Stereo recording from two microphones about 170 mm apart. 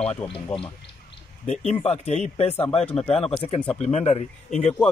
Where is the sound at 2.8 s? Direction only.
5° left (ahead or behind).